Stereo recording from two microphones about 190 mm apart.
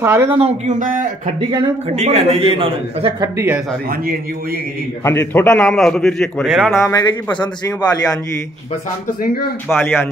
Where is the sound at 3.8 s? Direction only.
50° right (ahead or behind).